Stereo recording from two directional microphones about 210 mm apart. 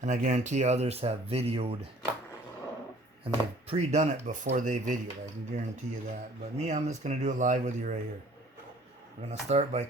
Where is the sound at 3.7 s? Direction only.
30° right (ahead or behind).